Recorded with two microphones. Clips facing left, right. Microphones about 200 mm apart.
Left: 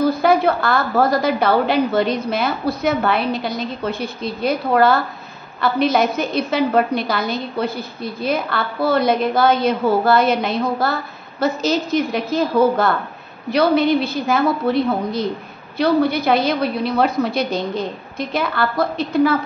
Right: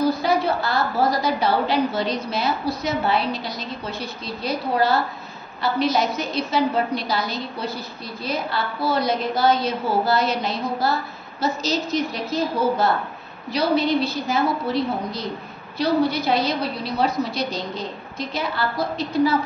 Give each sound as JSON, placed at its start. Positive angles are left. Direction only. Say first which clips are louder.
{"t": 0.0, "sound": "a woman's voice", "louder": "left 5 dB", "side_deg": 55}